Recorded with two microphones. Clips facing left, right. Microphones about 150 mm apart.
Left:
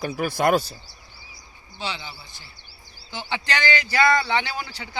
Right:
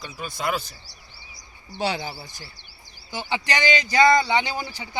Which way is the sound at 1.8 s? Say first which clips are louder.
Right 6 dB; 40° right (ahead or behind).